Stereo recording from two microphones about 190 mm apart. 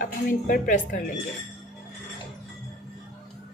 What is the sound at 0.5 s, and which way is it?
Speech, 45° left (ahead or behind).